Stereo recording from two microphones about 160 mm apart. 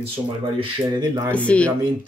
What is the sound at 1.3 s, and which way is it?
Speech, 10° left (ahead or behind).